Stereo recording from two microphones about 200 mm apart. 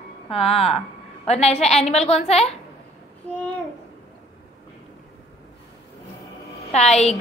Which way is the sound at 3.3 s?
10° left (ahead or behind).